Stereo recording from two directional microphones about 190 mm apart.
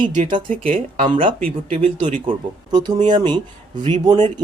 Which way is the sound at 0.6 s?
30° right (ahead or behind).